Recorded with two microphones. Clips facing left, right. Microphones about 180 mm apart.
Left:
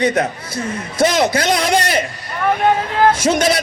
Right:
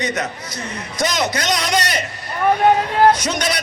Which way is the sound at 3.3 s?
50° left (ahead or behind).